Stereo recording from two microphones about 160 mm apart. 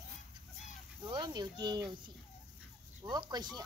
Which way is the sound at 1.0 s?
25° right (ahead or behind).